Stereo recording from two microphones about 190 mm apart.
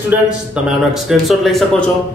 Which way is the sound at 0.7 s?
Centre (ahead or behind).